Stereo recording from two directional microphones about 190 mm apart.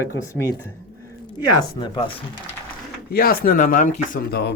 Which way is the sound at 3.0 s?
55° left (ahead or behind).